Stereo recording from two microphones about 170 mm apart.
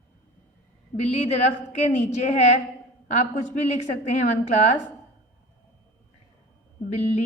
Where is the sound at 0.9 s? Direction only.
40° left (ahead or behind).